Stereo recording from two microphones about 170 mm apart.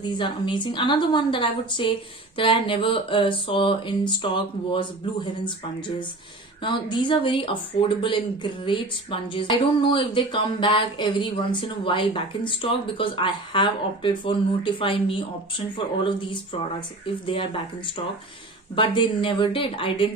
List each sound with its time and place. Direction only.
0.0 s a woman's voice: 25° left (ahead or behind)
18.8 s a woman's voice: 30° left (ahead or behind)